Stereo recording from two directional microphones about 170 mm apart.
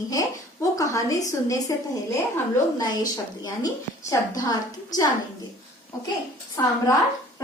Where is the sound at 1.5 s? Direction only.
20° left (ahead or behind).